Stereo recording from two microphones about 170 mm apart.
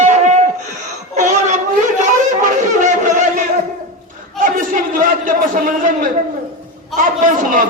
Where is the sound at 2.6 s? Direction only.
45° right (ahead or behind).